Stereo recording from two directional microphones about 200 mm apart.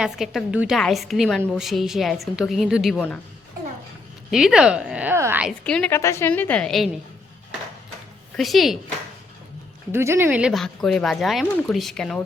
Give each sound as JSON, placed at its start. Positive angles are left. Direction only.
{"t": 0.0, "sound": "speech", "side_deg": -5}
{"t": 4.3, "sound": "speech", "side_deg": 0}
{"t": 5.6, "sound": "a woman's voice", "side_deg": 5}
{"t": 8.4, "sound": "speech", "side_deg": 0}
{"t": 9.9, "sound": "speech", "side_deg": -10}